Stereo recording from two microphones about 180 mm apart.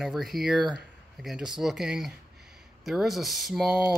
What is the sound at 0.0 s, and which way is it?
A man's voice, centre (ahead or behind).